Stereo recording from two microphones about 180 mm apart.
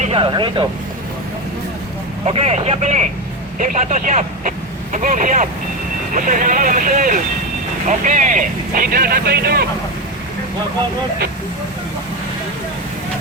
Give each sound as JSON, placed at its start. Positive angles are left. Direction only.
{"t": 0.0, "sound": "speech", "side_deg": -30}
{"t": 2.2, "sound": "speech", "side_deg": -35}